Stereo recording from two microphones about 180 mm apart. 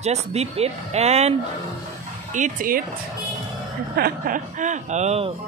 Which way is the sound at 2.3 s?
45° right (ahead or behind).